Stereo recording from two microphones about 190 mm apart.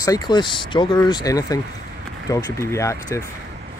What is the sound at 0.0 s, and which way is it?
Speech, 20° left (ahead or behind).